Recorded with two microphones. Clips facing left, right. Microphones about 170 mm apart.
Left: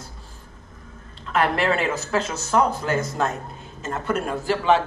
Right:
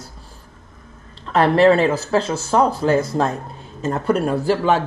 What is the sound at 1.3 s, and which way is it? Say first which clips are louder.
Speech: right 8 dB; 35° right (ahead or behind).